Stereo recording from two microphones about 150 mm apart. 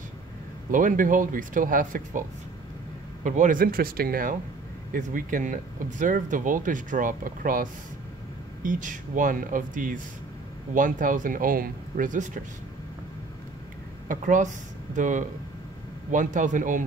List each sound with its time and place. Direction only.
0.7 s speech: 60° right (ahead or behind)
3.3 s speech: 60° right (ahead or behind)
8.6 s speech: 60° right (ahead or behind)
14.0 s speech: 60° right (ahead or behind)